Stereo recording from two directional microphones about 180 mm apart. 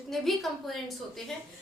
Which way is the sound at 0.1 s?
Centre (ahead or behind).